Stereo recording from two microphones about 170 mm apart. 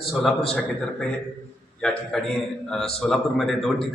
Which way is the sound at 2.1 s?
5° left (ahead or behind).